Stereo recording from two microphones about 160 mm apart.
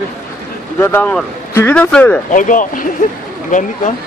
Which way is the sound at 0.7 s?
15° left (ahead or behind).